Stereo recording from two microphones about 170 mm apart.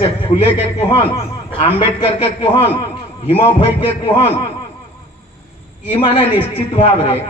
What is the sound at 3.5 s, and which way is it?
Speech, 30° left (ahead or behind).